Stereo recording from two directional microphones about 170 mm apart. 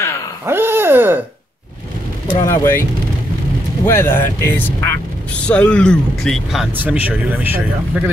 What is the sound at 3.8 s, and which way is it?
A man's voice, 15° left (ahead or behind).